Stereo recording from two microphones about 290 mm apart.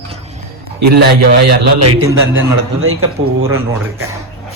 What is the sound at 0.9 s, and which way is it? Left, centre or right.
Speech, right.